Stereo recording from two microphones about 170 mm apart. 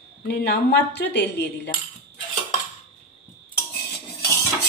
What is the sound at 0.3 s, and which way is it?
Cutlery, 70° left (ahead or behind).